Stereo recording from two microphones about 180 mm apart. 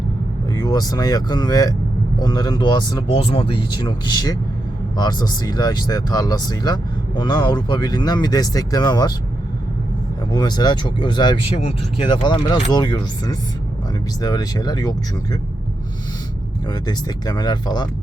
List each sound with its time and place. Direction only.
0.5 s speech: 20° left (ahead or behind)
10.3 s speech: 25° left (ahead or behind)
16.6 s speech: 25° left (ahead or behind)